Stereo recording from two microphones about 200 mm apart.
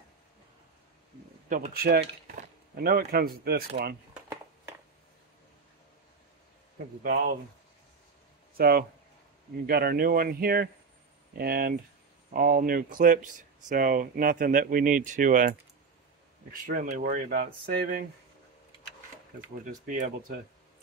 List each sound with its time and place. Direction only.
1.5 s speech: 45° right (ahead or behind)
7.0 s speech: 40° right (ahead or behind)
8.5 s speech: 50° right (ahead or behind)
16.6 s speech: 40° right (ahead or behind)
19.6 s speech: 40° right (ahead or behind)